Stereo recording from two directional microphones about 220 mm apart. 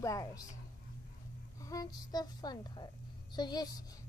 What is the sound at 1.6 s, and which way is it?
A child's voice, 15° left (ahead or behind).